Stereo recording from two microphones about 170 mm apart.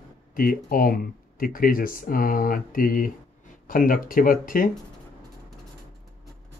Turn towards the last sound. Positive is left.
turn(degrees=55)  # may be behind; listen again after turning